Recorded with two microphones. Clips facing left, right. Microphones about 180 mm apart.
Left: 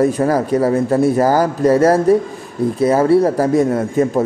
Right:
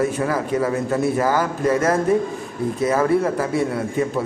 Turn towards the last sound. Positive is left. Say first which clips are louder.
# left 6 dB
turn(degrees=40)  # may be behind; listen again after turning